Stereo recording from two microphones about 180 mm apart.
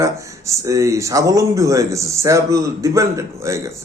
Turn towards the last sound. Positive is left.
turn(degrees=-15)  # may be behind; listen again after turning